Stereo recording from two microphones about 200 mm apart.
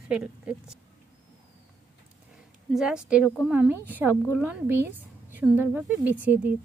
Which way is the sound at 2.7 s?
5° right (ahead or behind).